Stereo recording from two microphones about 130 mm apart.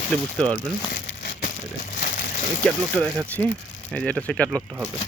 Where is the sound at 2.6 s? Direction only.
5° left (ahead or behind).